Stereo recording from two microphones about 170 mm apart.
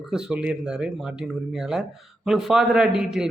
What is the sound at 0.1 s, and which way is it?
A man's voice, 5° right (ahead or behind).